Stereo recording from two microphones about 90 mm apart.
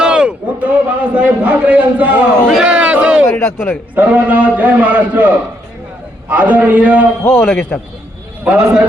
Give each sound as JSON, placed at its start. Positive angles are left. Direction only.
{"t": 0.0, "sound": "a man's voice", "side_deg": -10}
{"t": 2.5, "sound": "a sound", "side_deg": -5}
{"t": 3.3, "sound": "a man's voice", "side_deg": 15}
{"t": 3.9, "sound": "a man's voice", "side_deg": -20}
{"t": 7.3, "sound": "a man's voice", "side_deg": 20}
{"t": 8.4, "sound": "a man's voice", "side_deg": -10}